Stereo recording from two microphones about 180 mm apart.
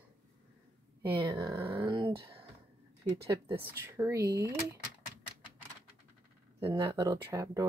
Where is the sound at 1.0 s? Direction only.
25° right (ahead or behind).